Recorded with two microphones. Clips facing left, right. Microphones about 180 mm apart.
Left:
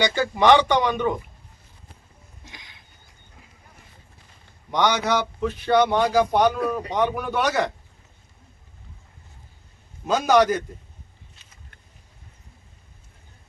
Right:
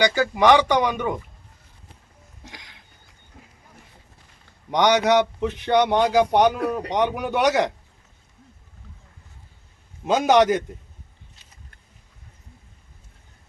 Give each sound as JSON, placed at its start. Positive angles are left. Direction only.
{"t": 0.0, "sound": "speech", "side_deg": -10}
{"t": 2.5, "sound": "a sound", "side_deg": -80}
{"t": 4.7, "sound": "a man's voice", "side_deg": -15}
{"t": 10.1, "sound": "a man's voice", "side_deg": -20}